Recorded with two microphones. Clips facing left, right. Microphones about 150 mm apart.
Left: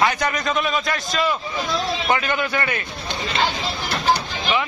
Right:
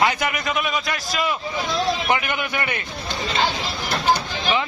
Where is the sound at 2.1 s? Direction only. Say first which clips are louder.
Left 2 dB; 20° right (ahead or behind).